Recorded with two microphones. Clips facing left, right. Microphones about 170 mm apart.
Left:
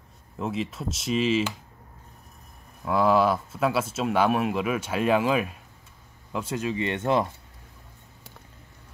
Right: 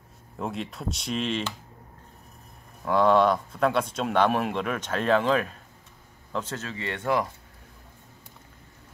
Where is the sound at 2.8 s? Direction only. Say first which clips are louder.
Right 1 dB; 5° left (ahead or behind); by 7.3 s 25° left (ahead or behind).